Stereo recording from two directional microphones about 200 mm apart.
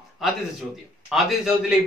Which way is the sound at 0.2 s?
Centre (ahead or behind).